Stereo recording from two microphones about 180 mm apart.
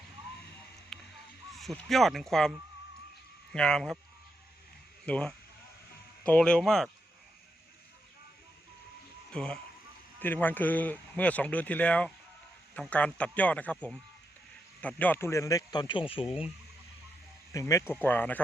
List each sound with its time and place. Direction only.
0.9 s music: centre (ahead or behind)
1.5 s speech: centre (ahead or behind)
5.0 s speech: 5° left (ahead or behind)
9.3 s speech: 5° left (ahead or behind)
14.8 s speech: 10° left (ahead or behind); by 16.2 s 30° left (ahead or behind)
17.5 s speech: 15° left (ahead or behind)